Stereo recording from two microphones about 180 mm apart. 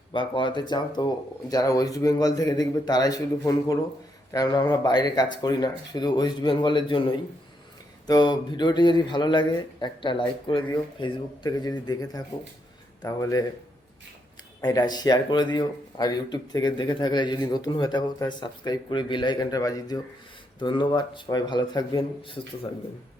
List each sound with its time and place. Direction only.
0.1 s speech: 25° left (ahead or behind)
8.0 s speech: 25° left (ahead or behind)
14.6 s speech: 20° left (ahead or behind)